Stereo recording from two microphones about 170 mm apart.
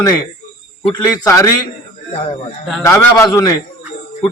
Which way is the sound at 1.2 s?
20° left (ahead or behind).